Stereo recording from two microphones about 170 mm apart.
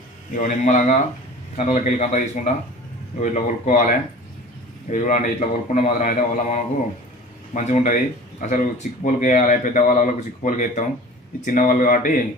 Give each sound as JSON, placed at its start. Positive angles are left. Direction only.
{"t": 0.3, "sound": "speech", "side_deg": 45}